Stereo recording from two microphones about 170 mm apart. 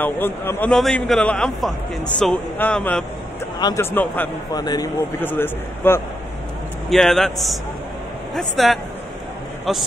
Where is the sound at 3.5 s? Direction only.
25° left (ahead or behind).